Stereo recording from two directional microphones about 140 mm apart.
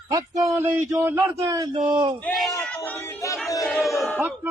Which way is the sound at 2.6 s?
5° left (ahead or behind).